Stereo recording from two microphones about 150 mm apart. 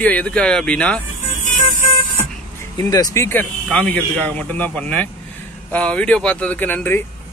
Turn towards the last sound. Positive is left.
turn(degrees=10)  # may be behind; listen again after turning